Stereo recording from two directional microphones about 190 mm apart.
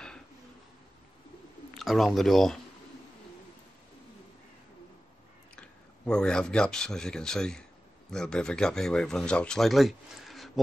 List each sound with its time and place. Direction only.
1.7 s speech: centre (ahead or behind)
5.6 s speech: 5° left (ahead or behind)